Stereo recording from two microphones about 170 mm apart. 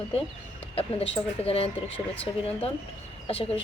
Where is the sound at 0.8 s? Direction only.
35° left (ahead or behind).